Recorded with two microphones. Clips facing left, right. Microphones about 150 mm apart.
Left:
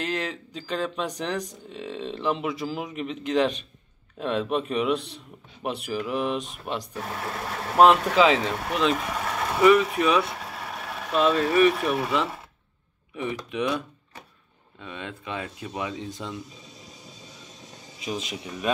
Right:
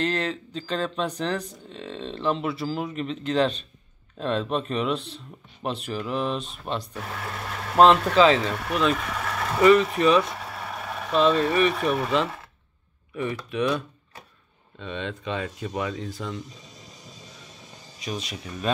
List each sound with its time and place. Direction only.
0.0 s speech: 10° left (ahead or behind)
9.6 s speech: 5° left (ahead or behind)
18.0 s speech: 20° left (ahead or behind)